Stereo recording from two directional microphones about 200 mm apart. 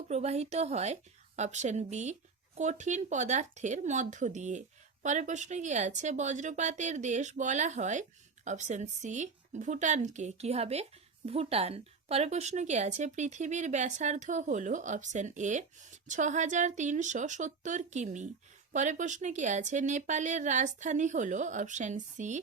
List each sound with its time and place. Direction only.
0.1 s speech: 35° right (ahead or behind)